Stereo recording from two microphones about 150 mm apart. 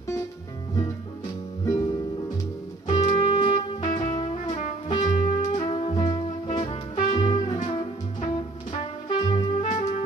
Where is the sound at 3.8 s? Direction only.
50° left (ahead or behind).